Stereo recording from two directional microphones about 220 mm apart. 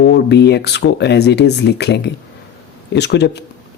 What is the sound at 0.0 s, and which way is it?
Speech, 50° left (ahead or behind).